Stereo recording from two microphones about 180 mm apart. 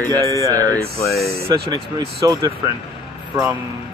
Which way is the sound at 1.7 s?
20° right (ahead or behind).